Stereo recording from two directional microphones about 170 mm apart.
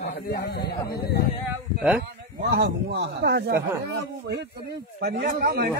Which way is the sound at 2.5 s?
75° right (ahead or behind).